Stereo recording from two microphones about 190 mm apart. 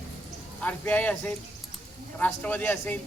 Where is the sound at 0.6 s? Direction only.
10° left (ahead or behind).